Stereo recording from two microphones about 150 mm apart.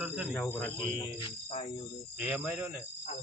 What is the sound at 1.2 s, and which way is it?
Jingle bell, 35° left (ahead or behind).